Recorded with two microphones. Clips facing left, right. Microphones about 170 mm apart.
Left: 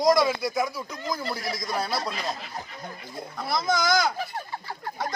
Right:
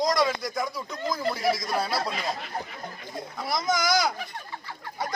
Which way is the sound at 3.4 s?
10° right (ahead or behind).